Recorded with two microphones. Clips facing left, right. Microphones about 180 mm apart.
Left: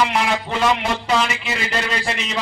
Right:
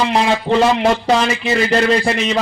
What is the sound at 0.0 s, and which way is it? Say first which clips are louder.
A man's voice: right 4 dB; 30° right (ahead or behind).